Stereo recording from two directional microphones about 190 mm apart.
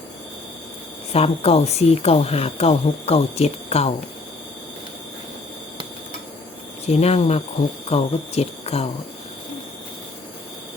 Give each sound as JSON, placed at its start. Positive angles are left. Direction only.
{"t": 1.1, "sound": "a woman's voice", "side_deg": 30}
{"t": 6.8, "sound": "a woman's voice", "side_deg": 35}